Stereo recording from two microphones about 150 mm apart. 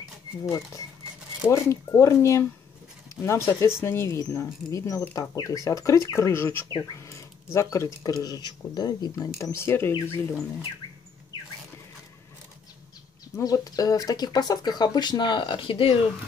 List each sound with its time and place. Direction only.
1.5 s speech: 20° left (ahead or behind)
13.4 s speech: 25° left (ahead or behind)